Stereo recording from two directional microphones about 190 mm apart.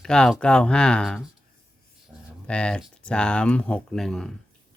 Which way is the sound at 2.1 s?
5° right (ahead or behind).